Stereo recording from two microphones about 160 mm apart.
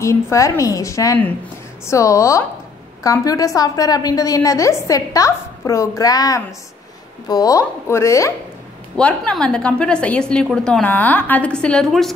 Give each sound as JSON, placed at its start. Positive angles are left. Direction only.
{"t": 0.0, "sound": "a woman's voice", "side_deg": 20}
{"t": 8.9, "sound": "a woman's voice", "side_deg": 5}